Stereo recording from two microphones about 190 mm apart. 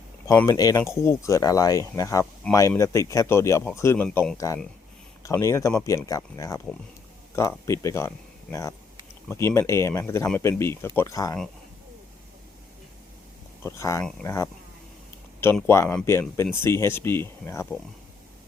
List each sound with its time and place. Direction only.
0.3 s speech: 20° left (ahead or behind)
9.3 s speech: 15° left (ahead or behind)
13.7 s speech: 15° left (ahead or behind)